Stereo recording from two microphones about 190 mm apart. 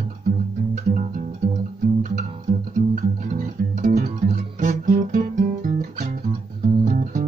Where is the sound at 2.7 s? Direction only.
40° right (ahead or behind).